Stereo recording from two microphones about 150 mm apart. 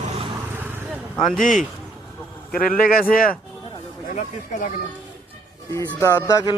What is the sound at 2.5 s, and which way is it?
Speech, 70° left (ahead or behind).